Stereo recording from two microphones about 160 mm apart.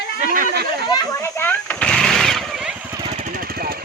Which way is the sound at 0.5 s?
80° right.